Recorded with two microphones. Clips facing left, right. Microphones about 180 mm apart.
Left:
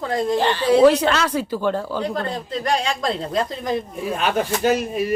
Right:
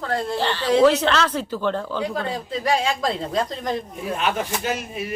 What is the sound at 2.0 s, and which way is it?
Speech, 5° right (ahead or behind).